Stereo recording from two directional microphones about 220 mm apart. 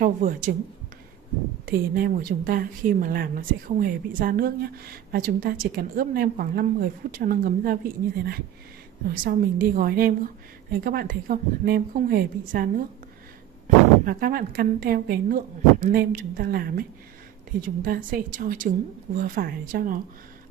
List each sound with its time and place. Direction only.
0.0 s speech: 35° right (ahead or behind)
1.7 s a woman's voice: 40° right (ahead or behind)
14.0 s speech: 40° right (ahead or behind)